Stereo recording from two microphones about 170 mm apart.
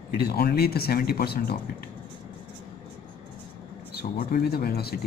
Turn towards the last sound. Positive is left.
turn(degrees=65)  # may be behind; listen again after turning